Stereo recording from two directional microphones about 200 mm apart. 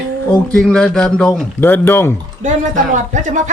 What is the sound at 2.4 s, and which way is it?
Speech, 40° right (ahead or behind).